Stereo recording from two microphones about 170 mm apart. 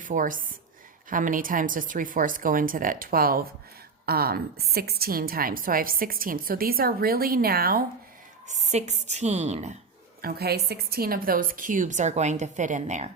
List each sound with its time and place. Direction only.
0.0 s a woman's voice: 50° right (ahead or behind)
8.4 s a woman's voice: 45° right (ahead or behind)
10.2 s a woman's voice: 65° right (ahead or behind); by 13.1 s 45° right (ahead or behind)